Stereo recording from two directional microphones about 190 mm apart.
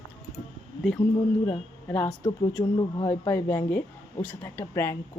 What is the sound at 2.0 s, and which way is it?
Speech, 25° left (ahead or behind).